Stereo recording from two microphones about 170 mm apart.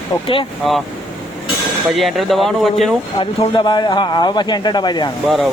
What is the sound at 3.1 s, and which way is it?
Speech, 25° left (ahead or behind).